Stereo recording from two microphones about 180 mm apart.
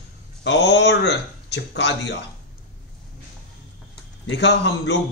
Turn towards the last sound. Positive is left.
turn(degrees=75)  # may be behind; listen again after turning